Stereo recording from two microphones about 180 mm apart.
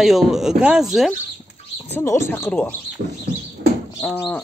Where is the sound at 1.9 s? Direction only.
15° left (ahead or behind).